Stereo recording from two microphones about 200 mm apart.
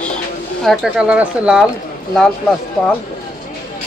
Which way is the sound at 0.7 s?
5° right (ahead or behind).